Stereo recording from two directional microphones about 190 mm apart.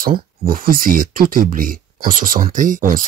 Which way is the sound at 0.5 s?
50° right (ahead or behind).